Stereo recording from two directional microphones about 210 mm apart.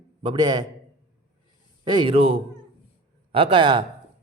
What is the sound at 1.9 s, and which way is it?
A man's voice, 25° right (ahead or behind).